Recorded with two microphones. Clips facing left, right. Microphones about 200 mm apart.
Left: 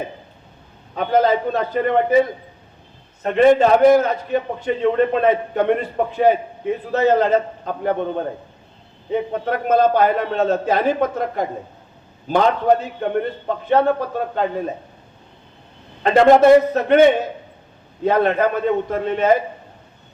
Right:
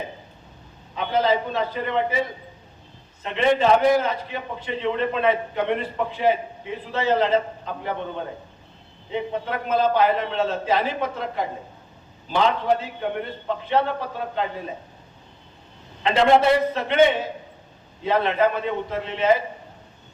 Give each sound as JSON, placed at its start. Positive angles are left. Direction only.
{"t": 0.9, "sound": "a man's voice", "side_deg": 50}
{"t": 3.2, "sound": "a man's voice", "side_deg": 50}
{"t": 16.0, "sound": "a man's voice", "side_deg": 50}